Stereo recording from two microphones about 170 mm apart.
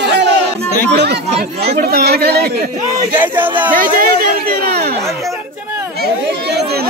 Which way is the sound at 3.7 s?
60° right (ahead or behind).